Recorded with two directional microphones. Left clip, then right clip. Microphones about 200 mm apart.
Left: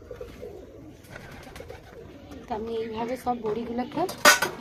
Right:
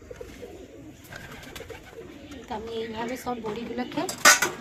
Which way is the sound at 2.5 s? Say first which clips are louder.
Left 3 dB; 55° left (ahead or behind).